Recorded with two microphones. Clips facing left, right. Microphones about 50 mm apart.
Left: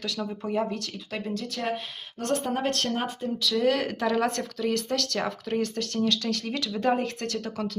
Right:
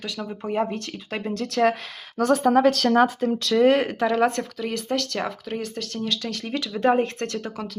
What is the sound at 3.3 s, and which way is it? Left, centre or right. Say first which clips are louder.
Speech: right 6 dB; right.